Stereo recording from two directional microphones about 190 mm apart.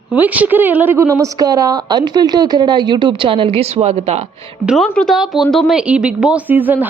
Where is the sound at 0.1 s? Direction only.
10° right (ahead or behind); by 4.3 s 35° right (ahead or behind).